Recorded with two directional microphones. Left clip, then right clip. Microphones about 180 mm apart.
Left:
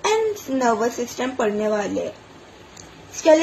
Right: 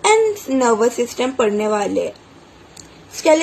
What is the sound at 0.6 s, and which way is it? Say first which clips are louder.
Speech: right 5 dB; 40° right (ahead or behind).